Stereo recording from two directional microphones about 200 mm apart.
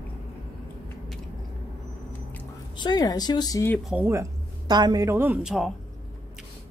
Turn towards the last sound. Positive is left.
turn(degrees=-5)  # may be behind; listen again after turning